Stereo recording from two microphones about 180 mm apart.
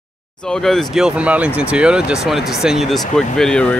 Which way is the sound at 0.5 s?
Centre (ahead or behind).